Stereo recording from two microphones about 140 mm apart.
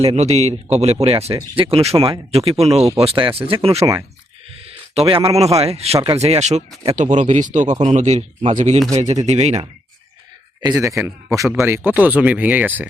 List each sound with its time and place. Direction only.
0.0 s speech: 50° right (ahead or behind)
4.9 s speech: 45° right (ahead or behind)
10.6 s a man's voice: 25° right (ahead or behind)
11.9 s speech: 10° right (ahead or behind)